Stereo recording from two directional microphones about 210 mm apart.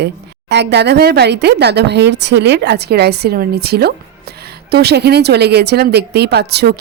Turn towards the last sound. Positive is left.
turn(degrees=-50)  # may be behind; listen again after turning